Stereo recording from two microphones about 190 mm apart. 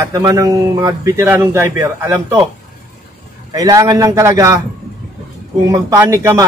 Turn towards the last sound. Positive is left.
turn(degrees=-15)  # may be behind; listen again after turning